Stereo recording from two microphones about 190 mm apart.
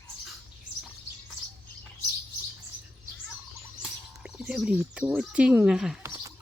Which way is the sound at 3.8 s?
5° right (ahead or behind).